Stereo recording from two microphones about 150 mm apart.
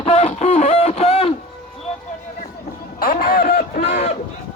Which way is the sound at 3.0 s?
75° left (ahead or behind).